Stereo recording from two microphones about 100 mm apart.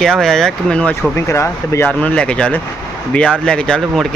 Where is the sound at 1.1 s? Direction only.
25° left (ahead or behind).